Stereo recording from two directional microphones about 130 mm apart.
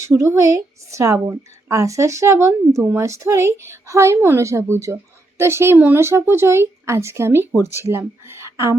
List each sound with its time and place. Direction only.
0.0 s speech: 20° right (ahead or behind)